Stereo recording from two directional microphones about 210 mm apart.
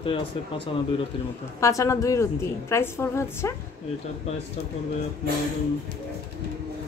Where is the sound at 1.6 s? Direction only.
15° left (ahead or behind).